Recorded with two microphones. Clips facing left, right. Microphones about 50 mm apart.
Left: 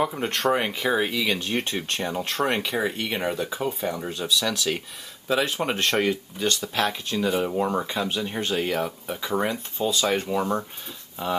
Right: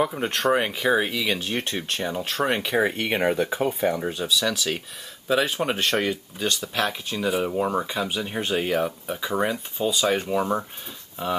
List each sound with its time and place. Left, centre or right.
0.0 s speech: centre
2.8 s speech: right
3.9 s speech: centre